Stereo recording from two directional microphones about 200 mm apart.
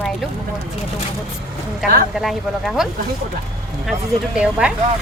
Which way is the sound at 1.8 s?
Centre (ahead or behind).